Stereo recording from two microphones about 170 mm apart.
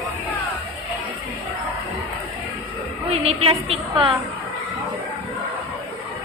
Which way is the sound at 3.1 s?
35° right (ahead or behind).